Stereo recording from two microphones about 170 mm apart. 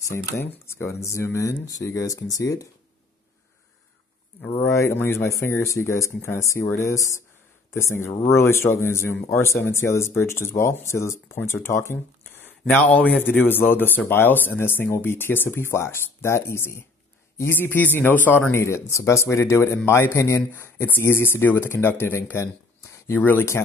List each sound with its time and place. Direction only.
0.1 s speech: 15° left (ahead or behind)
4.6 s speech: 15° left (ahead or behind)